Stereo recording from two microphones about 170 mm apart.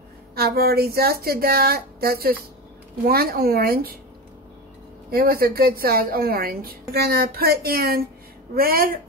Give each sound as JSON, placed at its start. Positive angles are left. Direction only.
{"t": 0.4, "sound": "a woman's voice", "side_deg": -65}
{"t": 5.1, "sound": "a woman's voice", "side_deg": -60}